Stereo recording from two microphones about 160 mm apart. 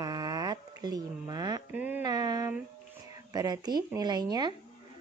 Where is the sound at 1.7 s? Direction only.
10° right (ahead or behind).